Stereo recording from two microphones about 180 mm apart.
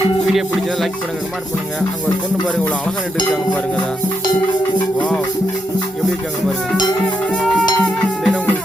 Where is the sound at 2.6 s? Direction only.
10° left (ahead or behind).